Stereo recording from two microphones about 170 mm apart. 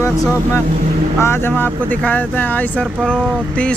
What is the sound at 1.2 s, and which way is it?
Speech, 15° left (ahead or behind).